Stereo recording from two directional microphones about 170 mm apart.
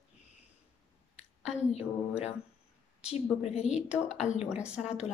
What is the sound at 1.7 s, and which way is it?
A woman's voice, 40° left (ahead or behind).